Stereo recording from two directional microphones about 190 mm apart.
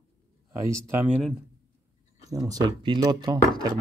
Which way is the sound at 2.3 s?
20° right (ahead or behind).